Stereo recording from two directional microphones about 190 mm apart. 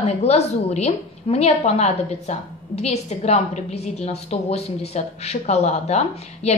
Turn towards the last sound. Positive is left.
turn(degrees=35)  # may be behind; listen again after turning